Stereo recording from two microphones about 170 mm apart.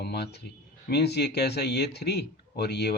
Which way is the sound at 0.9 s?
75° left (ahead or behind).